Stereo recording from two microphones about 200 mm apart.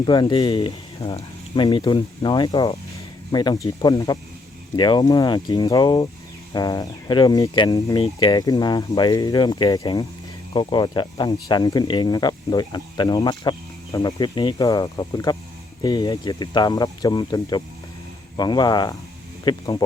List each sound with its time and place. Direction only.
0.0 s speech: 25° left (ahead or behind)